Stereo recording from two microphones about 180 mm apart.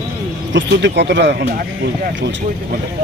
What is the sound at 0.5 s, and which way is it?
Speech, 75° right (ahead or behind).